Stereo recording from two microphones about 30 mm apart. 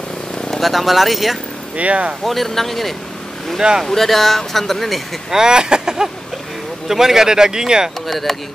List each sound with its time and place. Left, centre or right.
0.6 s speech: centre
1.8 s speech: right
2.2 s speech: centre
5.3 s speech: right
8.1 s speech: centre